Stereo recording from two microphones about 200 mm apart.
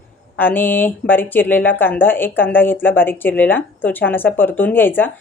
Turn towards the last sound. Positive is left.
turn(degrees=10)  # may be behind; listen again after turning